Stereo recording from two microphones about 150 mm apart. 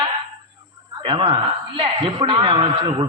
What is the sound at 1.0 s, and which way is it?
A man's voice, 40° right (ahead or behind).